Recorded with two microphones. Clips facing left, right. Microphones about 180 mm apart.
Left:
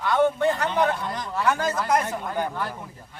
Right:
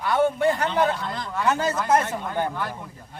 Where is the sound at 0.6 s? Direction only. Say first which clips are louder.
Right 1 dB; 15° left (ahead or behind).